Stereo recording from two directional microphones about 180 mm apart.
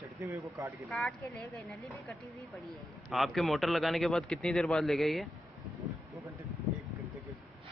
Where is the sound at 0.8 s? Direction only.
Centre (ahead or behind).